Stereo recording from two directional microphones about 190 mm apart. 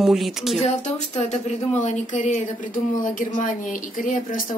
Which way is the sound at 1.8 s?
40° left (ahead or behind).